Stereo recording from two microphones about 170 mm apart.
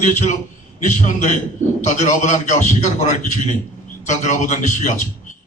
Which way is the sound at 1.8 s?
45° left (ahead or behind).